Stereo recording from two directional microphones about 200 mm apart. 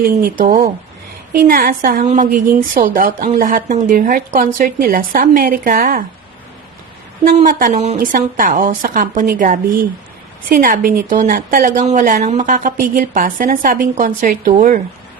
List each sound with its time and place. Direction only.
0.2 s a woman's voice: 40° right (ahead or behind)
7.3 s a woman's voice: 40° right (ahead or behind)